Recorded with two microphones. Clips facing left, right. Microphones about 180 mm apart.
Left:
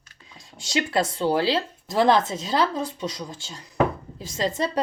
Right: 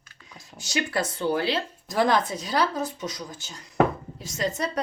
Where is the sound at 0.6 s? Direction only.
25° left (ahead or behind).